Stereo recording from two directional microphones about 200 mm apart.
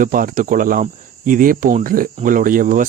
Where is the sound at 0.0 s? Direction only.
45° right (ahead or behind).